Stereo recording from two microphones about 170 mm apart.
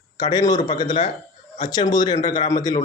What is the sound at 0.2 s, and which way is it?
Speech, 25° left (ahead or behind).